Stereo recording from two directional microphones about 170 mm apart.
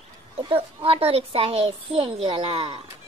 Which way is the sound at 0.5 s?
35° right (ahead or behind).